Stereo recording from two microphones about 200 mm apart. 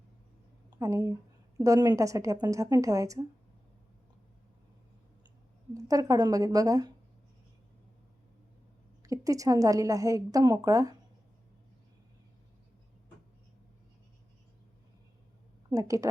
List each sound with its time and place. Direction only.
0.8 s a woman's voice: 15° right (ahead or behind)
5.7 s a woman's voice: 15° right (ahead or behind)
9.0 s a woman's voice: 15° right (ahead or behind)
15.7 s a woman's voice: 15° right (ahead or behind)